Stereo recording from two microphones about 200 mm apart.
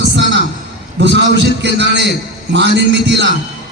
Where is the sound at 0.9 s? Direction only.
60° right (ahead or behind).